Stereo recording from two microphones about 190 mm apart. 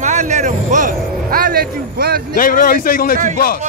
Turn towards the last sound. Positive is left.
turn(degrees=50)  # may be behind; listen again after turning